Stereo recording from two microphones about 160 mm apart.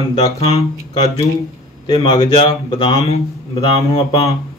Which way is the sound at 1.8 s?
30° left (ahead or behind).